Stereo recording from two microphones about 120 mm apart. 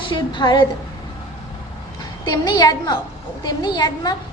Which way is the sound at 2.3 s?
35° left (ahead or behind).